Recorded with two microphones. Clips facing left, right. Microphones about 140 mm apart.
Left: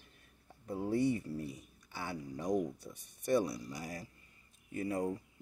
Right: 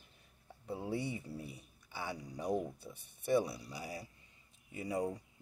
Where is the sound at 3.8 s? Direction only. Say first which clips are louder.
Left 1 dB; 10° right (ahead or behind).